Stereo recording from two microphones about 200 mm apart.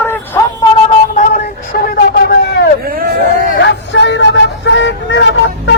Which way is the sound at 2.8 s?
50° right (ahead or behind).